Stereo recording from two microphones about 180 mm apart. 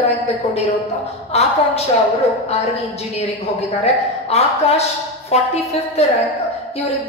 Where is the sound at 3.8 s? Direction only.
35° left (ahead or behind).